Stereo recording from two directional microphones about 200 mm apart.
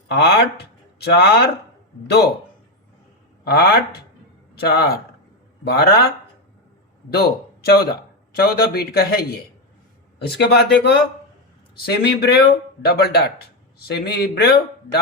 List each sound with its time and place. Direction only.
0.1 s a man's voice: 55° left (ahead or behind)
3.4 s speech: 55° left (ahead or behind)
7.1 s a man's voice: 50° left (ahead or behind)
10.2 s a man's voice: 55° left (ahead or behind)